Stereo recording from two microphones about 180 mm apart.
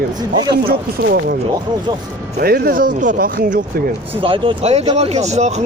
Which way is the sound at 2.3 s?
60° right (ahead or behind).